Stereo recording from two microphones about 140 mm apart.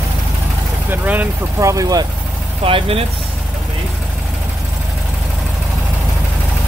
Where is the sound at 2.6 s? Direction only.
40° right (ahead or behind).